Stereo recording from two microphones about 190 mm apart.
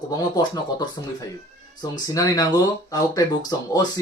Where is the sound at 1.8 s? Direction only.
20° left (ahead or behind).